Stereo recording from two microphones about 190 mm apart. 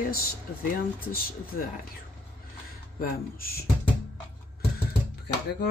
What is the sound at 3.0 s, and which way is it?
Speech, 50° left (ahead or behind).